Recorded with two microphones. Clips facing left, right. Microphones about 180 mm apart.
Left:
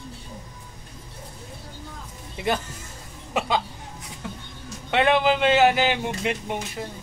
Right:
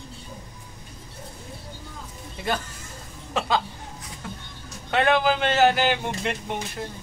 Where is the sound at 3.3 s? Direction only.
15° left (ahead or behind).